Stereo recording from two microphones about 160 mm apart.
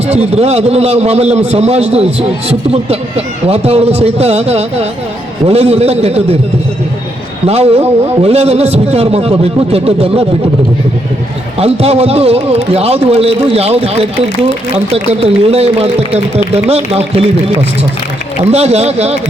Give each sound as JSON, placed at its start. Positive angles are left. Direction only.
{"t": 0.1, "sound": "a man's voice", "side_deg": -40}
{"t": 7.4, "sound": "a man's voice", "side_deg": -40}
{"t": 11.6, "sound": "a man's voice", "side_deg": -40}
{"t": 18.5, "sound": "a man's voice", "side_deg": -40}